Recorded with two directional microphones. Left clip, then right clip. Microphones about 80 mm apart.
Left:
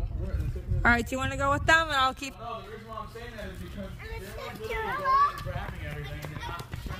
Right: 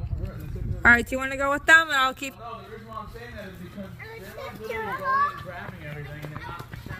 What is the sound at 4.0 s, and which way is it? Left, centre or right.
Speech, centre.